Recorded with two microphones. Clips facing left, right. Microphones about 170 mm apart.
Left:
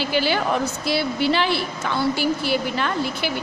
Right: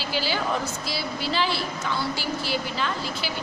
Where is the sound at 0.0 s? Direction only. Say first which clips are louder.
Left 6 dB; 60° left (ahead or behind).